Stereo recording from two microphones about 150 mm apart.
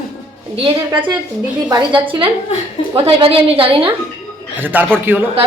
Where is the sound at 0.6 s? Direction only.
40° right (ahead or behind).